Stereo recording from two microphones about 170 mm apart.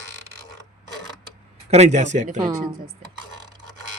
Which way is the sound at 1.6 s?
40° right (ahead or behind).